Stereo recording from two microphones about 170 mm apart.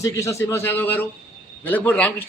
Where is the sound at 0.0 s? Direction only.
15° left (ahead or behind).